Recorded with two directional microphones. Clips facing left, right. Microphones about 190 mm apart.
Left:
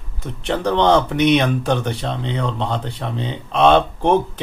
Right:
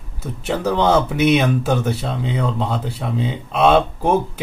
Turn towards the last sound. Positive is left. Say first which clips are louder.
# left 1 dB
turn(degrees=-5)  # may be behind; listen again after turning